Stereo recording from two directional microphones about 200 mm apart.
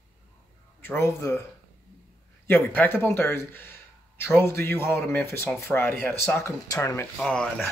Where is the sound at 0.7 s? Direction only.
10° left (ahead or behind).